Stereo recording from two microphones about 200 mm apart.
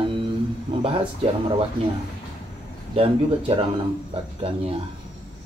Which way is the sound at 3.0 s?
25° right (ahead or behind).